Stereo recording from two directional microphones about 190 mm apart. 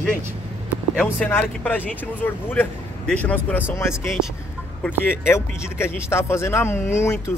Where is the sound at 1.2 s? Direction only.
10° left (ahead or behind).